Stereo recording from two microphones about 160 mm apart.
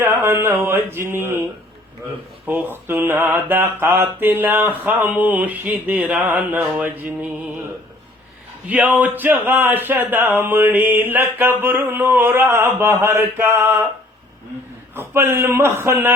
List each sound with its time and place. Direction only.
0.0 s mantra: 15° right (ahead or behind)
2.5 s mantra: 10° right (ahead or behind)
8.6 s mantra: 10° right (ahead or behind)
14.9 s mantra: 15° right (ahead or behind)